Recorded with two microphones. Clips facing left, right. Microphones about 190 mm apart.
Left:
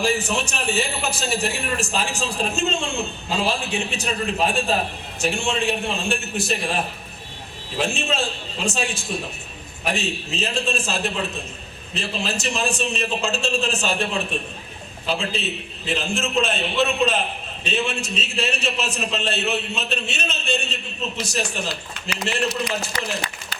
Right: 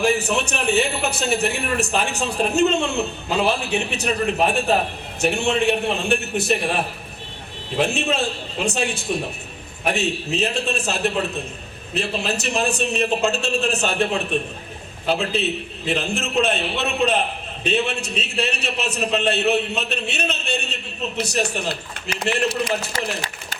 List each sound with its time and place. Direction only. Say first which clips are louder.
0.0 s a man's voice: right 3 dB; 60° right (ahead or behind)
7.8 s a man's voice: right 3 dB; 60° right (ahead or behind)